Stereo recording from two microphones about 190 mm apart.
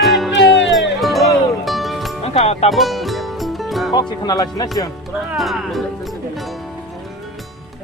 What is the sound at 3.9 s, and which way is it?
Speech, 20° left (ahead or behind).